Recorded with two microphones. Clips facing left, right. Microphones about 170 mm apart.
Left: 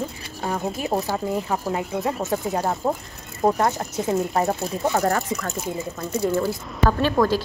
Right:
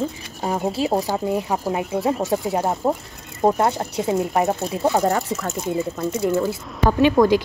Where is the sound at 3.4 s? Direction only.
25° right (ahead or behind); by 5.5 s 5° right (ahead or behind).